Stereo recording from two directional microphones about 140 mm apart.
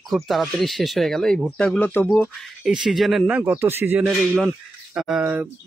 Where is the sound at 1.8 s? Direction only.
15° left (ahead or behind).